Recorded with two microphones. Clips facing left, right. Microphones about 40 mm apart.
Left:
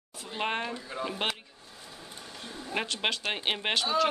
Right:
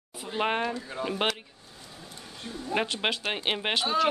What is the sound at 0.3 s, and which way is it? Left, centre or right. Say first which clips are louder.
Speech: right 4 dB; centre.